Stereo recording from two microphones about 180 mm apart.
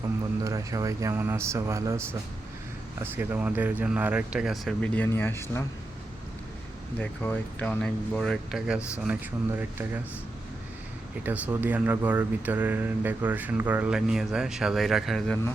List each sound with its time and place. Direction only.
0.4 s speech: 20° right (ahead or behind); by 5.6 s 15° left (ahead or behind)
7.0 s speech: 10° left (ahead or behind); by 10.0 s 10° right (ahead or behind)
11.3 s speech: 10° right (ahead or behind)